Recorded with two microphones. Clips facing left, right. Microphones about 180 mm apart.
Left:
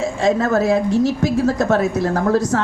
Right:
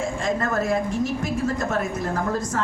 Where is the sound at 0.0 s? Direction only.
75° left (ahead or behind).